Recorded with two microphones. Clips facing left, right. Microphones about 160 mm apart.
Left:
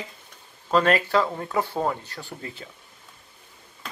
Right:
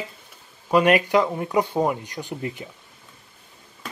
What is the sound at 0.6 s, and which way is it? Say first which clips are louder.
Speech: right 3 dB; 15° right (ahead or behind).